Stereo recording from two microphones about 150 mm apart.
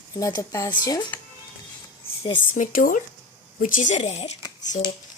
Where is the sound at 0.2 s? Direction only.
25° left (ahead or behind).